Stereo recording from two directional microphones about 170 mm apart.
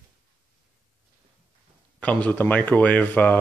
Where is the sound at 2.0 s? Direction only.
10° left (ahead or behind).